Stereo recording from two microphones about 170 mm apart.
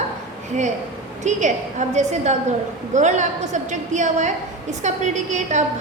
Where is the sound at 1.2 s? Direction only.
45° right (ahead or behind).